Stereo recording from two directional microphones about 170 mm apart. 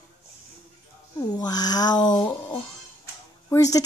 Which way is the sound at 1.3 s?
25° left (ahead or behind).